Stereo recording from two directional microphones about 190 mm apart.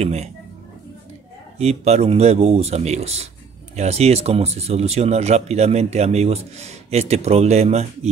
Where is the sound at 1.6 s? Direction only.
35° right (ahead or behind).